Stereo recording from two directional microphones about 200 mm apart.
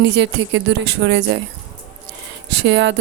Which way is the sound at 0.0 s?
65° right (ahead or behind).